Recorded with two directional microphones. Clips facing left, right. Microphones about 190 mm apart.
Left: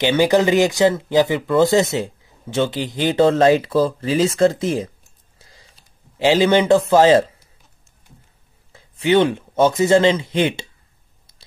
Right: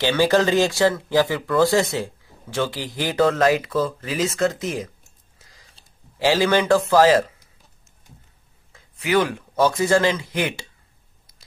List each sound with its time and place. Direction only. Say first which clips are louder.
0.0 s speech: left 3 dB; 20° left (ahead or behind)
5.4 s a sound: left 4 dB; 30° left (ahead or behind)
6.1 s speech: left 4 dB; 20° left (ahead or behind)
8.7 s speech: left 5 dB; 30° left (ahead or behind)
11.3 s biting: left 4 dB; 30° left (ahead or behind)